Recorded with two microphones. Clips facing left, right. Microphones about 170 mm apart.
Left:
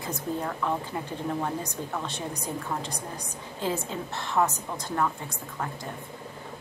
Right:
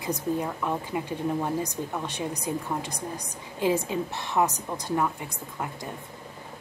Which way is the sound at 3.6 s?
15° right (ahead or behind).